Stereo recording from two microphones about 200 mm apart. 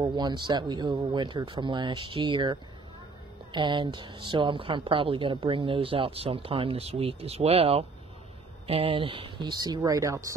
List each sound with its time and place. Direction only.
0.0 s a woman's voice: 20° right (ahead or behind)